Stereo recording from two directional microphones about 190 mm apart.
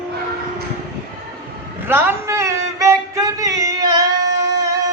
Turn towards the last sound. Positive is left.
turn(degrees=-20)  # may be behind; listen again after turning